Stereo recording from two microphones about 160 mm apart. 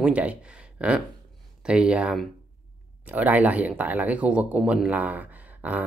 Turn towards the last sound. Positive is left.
turn(degrees=-10)  # may be behind; listen again after turning